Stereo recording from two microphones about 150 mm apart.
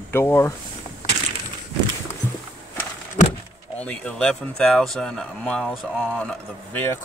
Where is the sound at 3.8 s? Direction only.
5° left (ahead or behind).